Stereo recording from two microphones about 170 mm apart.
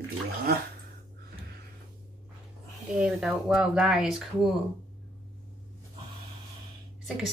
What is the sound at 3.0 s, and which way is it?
Speech, 5° right (ahead or behind).